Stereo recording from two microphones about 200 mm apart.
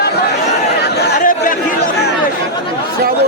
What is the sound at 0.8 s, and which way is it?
Chatter, 55° left (ahead or behind).